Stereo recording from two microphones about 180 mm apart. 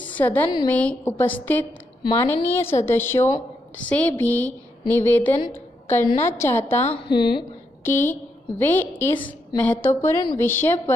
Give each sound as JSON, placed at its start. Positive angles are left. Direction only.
{"t": 0.0, "sound": "a sound", "side_deg": 10}
{"t": 0.7, "sound": "a woman's voice", "side_deg": 10}
{"t": 5.5, "sound": "a sound", "side_deg": 15}
{"t": 6.1, "sound": "a woman's voice", "side_deg": 15}
{"t": 6.9, "sound": "speech", "side_deg": 25}
{"t": 8.0, "sound": "a woman's voice", "side_deg": 10}